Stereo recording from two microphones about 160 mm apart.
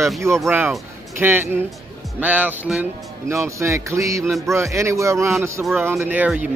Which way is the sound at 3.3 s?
20° right (ahead or behind).